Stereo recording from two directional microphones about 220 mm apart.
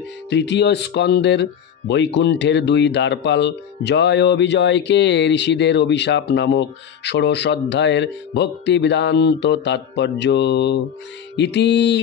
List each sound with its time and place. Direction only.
0.3 s speech: 50° left (ahead or behind)